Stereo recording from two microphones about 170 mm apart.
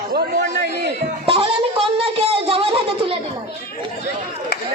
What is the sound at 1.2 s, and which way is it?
Music, 35° right (ahead or behind).